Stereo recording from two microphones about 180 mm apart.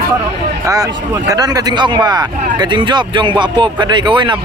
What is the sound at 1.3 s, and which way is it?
Speech, 20° right (ahead or behind).